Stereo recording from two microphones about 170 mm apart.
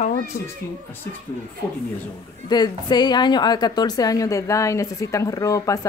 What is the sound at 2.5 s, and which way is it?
A woman's voice, 25° left (ahead or behind).